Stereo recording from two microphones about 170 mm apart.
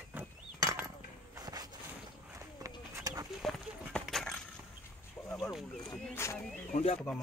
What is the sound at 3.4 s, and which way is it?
Horse, centre (ahead or behind).